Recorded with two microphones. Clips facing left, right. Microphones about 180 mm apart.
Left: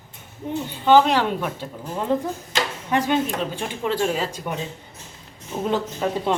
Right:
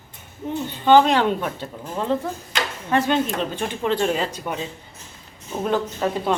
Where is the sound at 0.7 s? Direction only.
5° left (ahead or behind).